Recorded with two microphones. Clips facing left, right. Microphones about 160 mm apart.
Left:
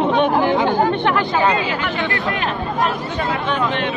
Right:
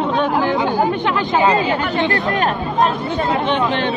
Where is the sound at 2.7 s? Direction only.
30° right (ahead or behind).